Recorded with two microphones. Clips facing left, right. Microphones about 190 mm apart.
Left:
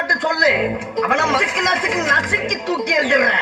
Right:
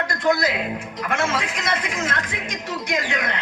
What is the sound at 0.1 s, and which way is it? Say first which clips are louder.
A man's voice: left 3 dB; 80° left.